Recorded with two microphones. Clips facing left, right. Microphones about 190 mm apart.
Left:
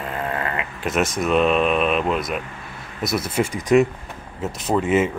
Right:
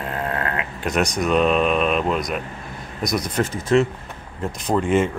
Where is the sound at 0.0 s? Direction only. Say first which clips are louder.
Even; centre (ahead or behind).